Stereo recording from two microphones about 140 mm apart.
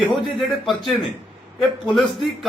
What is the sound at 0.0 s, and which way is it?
Speech, centre (ahead or behind).